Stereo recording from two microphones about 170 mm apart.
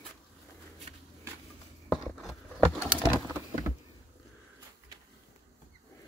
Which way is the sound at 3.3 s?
20° right (ahead or behind).